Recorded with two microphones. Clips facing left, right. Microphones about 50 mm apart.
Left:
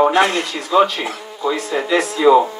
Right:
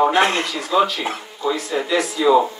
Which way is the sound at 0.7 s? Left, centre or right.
Centre.